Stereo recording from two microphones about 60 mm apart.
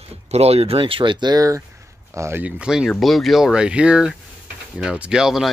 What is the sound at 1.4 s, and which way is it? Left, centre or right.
Speech, right.